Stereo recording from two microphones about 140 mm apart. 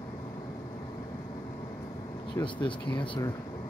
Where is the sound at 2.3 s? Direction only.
35° left (ahead or behind).